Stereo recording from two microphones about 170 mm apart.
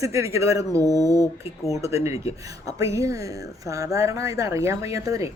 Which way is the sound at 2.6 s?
20° right (ahead or behind).